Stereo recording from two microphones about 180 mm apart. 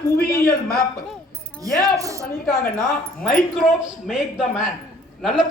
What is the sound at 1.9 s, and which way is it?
Speech, 20° right (ahead or behind).